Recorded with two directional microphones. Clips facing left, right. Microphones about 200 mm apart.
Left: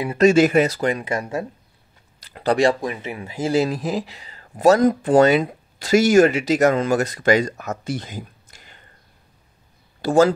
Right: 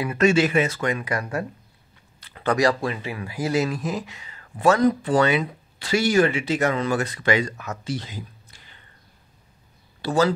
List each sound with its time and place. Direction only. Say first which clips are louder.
0.0 s speech: left 5 dB; 35° left (ahead or behind)
2.1 s speech: left 3 dB; 40° left (ahead or behind)
10.0 s speech: left 5 dB; 45° left (ahead or behind)